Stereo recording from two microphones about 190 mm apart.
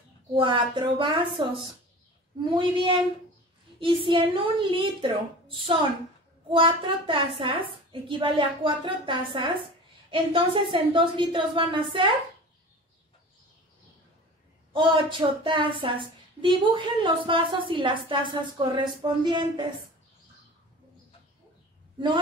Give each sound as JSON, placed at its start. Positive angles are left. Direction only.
{"t": 0.3, "sound": "a woman's voice", "side_deg": -25}
{"t": 14.7, "sound": "a woman's voice", "side_deg": -25}